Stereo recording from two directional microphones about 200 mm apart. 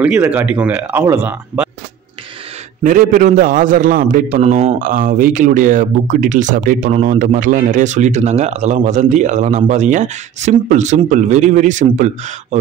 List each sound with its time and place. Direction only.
0.0 s speech: 10° right (ahead or behind)
2.8 s a man's voice: 40° right (ahead or behind)